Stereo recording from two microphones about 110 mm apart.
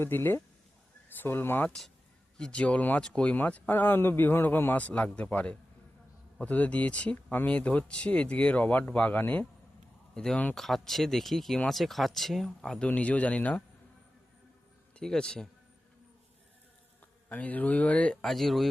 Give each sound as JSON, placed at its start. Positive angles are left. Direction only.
{"t": 0.0, "sound": "speech", "side_deg": 20}
{"t": 14.9, "sound": "speech", "side_deg": 5}
{"t": 17.2, "sound": "speech", "side_deg": 15}